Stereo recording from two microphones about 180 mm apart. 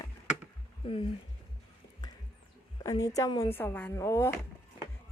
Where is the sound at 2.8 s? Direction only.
20° left (ahead or behind).